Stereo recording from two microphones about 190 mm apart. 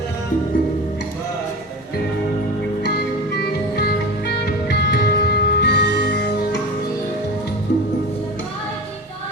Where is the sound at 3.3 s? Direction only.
55° left (ahead or behind).